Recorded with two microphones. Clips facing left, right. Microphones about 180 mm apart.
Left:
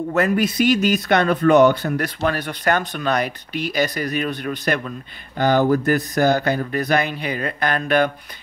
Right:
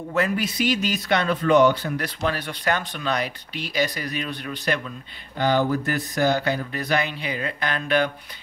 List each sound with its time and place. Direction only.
0.1 s speech: 50° left (ahead or behind)